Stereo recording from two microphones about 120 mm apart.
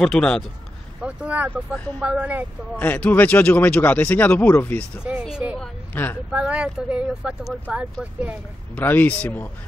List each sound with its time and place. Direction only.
0.0 s speech: 5° left (ahead or behind)
1.0 s speech: 10° right (ahead or behind)
2.8 s speech: 15° left (ahead or behind)
5.4 s speech: 10° right (ahead or behind)
5.9 s speech: 15° left (ahead or behind)
6.3 s speech: 10° right (ahead or behind)
8.7 s speech: 15° left (ahead or behind)